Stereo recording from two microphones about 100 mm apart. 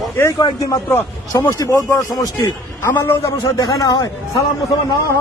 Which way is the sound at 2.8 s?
25° left (ahead or behind).